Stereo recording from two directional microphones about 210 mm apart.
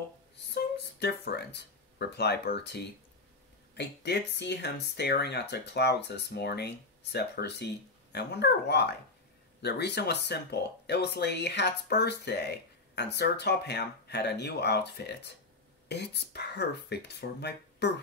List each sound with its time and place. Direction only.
0.9 s speech: 50° left (ahead or behind)